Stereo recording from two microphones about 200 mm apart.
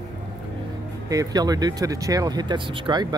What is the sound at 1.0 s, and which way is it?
Speech, 20° right (ahead or behind).